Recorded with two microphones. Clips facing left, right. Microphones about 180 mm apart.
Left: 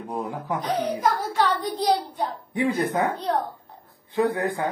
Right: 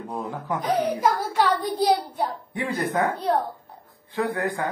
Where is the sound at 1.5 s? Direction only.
10° right (ahead or behind).